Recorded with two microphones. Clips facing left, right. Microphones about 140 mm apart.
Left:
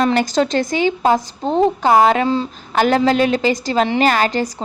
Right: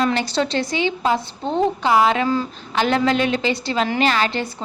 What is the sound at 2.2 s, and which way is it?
Speech, 25° left (ahead or behind).